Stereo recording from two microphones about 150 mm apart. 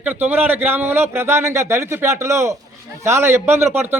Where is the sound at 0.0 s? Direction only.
10° right (ahead or behind).